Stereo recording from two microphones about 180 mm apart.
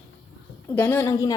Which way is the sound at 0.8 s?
10° left (ahead or behind).